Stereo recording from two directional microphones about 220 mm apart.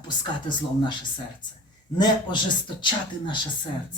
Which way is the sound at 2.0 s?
20° left (ahead or behind).